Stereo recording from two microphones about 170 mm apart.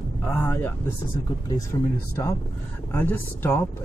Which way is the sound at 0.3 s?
10° left (ahead or behind).